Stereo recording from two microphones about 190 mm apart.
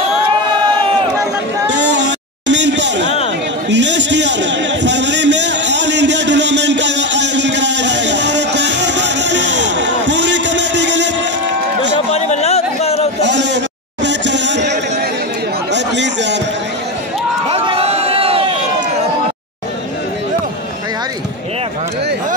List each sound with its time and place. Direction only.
1.7 s a sound: 70° right (ahead or behind)
12.1 s a sound: 35° left (ahead or behind)
13.2 s bleat: 65° right (ahead or behind)
14.0 s music: 65° right (ahead or behind)
15.7 s chatter: 65° right (ahead or behind)
17.5 s crowd: 30° right (ahead or behind)